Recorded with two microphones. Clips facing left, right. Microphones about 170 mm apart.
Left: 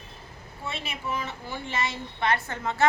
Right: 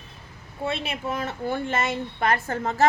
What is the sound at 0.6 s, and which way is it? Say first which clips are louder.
A woman's voice: right 7 dB; 55° right (ahead or behind).